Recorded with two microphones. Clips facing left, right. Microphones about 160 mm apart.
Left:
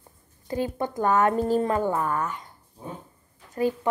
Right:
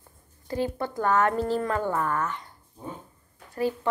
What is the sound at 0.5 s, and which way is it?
Speech, 15° left (ahead or behind).